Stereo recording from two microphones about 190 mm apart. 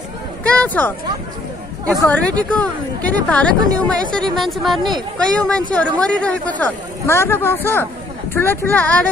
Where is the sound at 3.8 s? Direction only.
Centre (ahead or behind).